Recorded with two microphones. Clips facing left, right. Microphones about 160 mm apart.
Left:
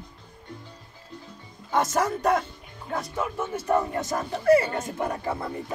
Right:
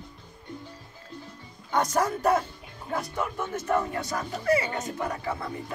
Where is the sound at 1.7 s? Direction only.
Centre (ahead or behind).